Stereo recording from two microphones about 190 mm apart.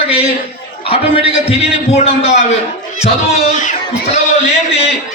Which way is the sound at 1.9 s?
35° left (ahead or behind).